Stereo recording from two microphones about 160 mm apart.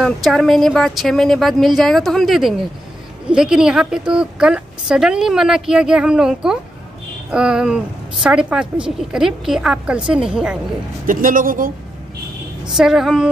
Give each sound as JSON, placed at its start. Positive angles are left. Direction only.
{"t": 0.0, "sound": "a woman's voice", "side_deg": 0}
{"t": 11.1, "sound": "speech", "side_deg": -60}
{"t": 12.7, "sound": "a woman's voice", "side_deg": 0}